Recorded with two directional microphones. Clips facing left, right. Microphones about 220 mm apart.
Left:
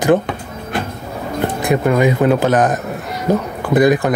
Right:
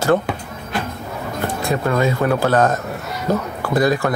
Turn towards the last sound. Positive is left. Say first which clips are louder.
# left 4 dB
turn(degrees=15)  # may be behind; listen again after turning